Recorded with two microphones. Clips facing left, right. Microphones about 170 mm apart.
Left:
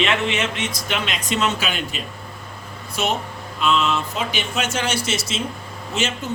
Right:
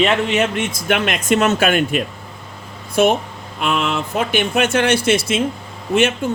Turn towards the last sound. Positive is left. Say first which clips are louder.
# right 8 dB
turn(degrees=-55)  # may be behind; listen again after turning